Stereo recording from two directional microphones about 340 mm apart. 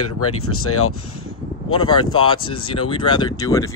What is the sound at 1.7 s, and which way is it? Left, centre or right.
Speech, centre.